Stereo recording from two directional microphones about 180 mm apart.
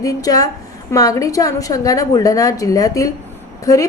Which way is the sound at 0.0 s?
20° left (ahead or behind).